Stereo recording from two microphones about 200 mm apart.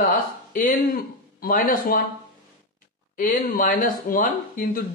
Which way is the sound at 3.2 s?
45° left (ahead or behind).